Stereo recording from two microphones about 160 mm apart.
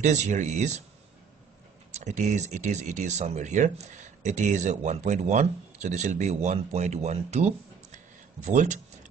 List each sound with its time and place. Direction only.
0.0 s speech: 45° right (ahead or behind)
2.0 s speech: 45° right (ahead or behind)